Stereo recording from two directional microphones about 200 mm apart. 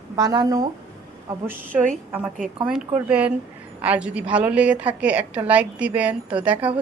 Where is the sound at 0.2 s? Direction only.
20° right (ahead or behind).